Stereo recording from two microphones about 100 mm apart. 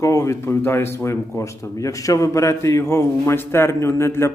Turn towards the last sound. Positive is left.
turn(degrees=25)  # may be behind; listen again after turning